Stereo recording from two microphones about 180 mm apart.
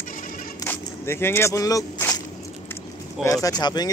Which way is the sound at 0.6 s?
15° left (ahead or behind).